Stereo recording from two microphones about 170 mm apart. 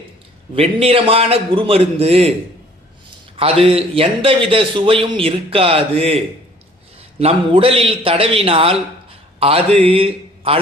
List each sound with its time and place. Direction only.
0.5 s a man's voice: 35° right (ahead or behind)
3.3 s a man's voice: 35° right (ahead or behind)